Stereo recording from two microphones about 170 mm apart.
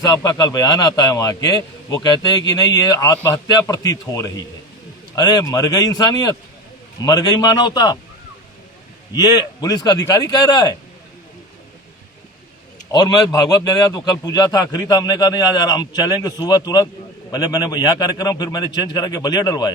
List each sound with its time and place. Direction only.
0.0 s a man's voice: 20° left (ahead or behind)
9.2 s a man's voice: 25° left (ahead or behind)
12.9 s a man's voice: 25° left (ahead or behind)